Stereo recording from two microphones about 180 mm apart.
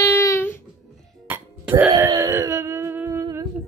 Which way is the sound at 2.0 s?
15° right (ahead or behind).